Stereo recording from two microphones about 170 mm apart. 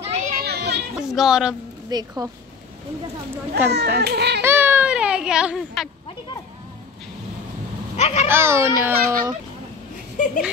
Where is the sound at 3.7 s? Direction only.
75° right (ahead or behind).